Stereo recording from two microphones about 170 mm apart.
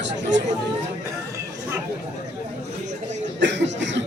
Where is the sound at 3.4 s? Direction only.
90° right.